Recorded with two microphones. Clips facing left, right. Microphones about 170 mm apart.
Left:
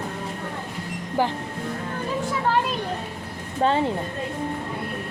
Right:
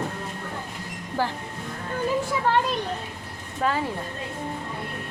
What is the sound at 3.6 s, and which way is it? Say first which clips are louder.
Speech: left 4 dB; 25° left (ahead or behind).